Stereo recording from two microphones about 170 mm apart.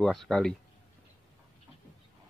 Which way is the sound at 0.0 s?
Centre (ahead or behind).